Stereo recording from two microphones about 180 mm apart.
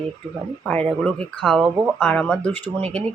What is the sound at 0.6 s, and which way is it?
Speech, 5° left (ahead or behind).